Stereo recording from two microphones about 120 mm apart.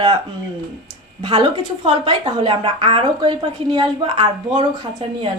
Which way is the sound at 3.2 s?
35° right (ahead or behind).